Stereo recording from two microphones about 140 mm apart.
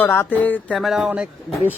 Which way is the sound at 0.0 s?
15° left (ahead or behind).